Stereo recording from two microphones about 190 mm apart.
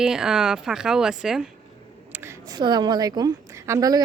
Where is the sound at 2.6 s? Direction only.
20° right (ahead or behind).